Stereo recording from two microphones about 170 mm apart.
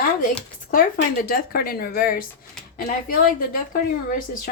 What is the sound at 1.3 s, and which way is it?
Speech, 60° left (ahead or behind).